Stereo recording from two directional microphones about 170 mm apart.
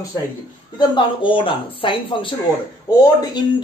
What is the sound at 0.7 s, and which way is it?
Speech, 30° left (ahead or behind).